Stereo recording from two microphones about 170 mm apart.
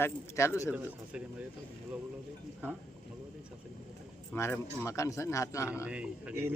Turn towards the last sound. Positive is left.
turn(degrees=-10)  # may be behind; listen again after turning